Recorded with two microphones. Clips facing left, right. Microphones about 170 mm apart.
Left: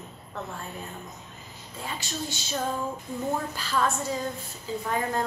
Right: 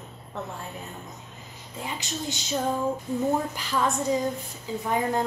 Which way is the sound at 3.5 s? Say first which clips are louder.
Right 1 dB; 20° right (ahead or behind).